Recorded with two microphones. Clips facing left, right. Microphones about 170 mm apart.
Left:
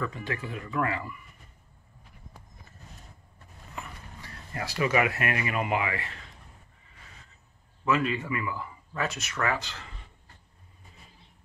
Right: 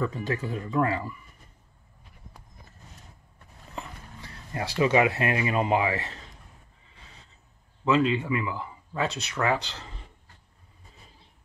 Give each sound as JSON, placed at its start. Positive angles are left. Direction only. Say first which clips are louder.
{"t": 0.0, "sound": "speech", "louder": "right 4 dB", "side_deg": -30}
{"t": 3.7, "sound": "speech", "louder": "right 2 dB", "side_deg": -30}
{"t": 7.8, "sound": "speech", "louder": "right 4 dB", "side_deg": -20}
{"t": 9.7, "sound": "speech", "louder": "right 2 dB", "side_deg": -35}